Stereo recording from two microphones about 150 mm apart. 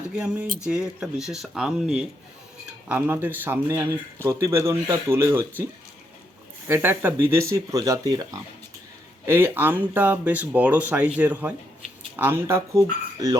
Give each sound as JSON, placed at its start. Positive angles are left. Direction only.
{"t": 0.2, "sound": "speech", "side_deg": -10}
{"t": 6.7, "sound": "speech", "side_deg": -15}